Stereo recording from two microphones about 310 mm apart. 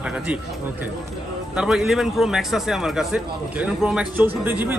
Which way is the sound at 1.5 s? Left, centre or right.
Centre.